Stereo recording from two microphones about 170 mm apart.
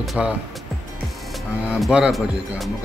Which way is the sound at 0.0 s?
Centre (ahead or behind).